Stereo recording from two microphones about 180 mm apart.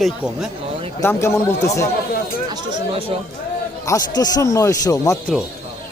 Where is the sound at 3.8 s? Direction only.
20° left (ahead or behind).